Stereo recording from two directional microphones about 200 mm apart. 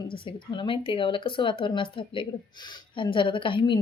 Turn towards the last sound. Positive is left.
turn(degrees=25)  # may be behind; listen again after turning